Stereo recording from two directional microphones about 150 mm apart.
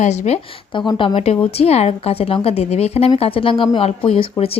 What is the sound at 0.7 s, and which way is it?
A woman's voice, 30° left (ahead or behind).